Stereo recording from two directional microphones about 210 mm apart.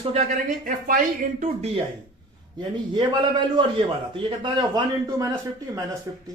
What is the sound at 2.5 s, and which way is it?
A man's voice, 20° right (ahead or behind).